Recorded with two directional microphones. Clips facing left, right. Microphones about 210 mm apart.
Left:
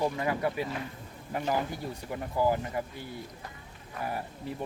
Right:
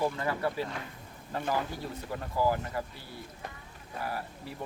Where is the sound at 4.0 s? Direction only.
20° left (ahead or behind).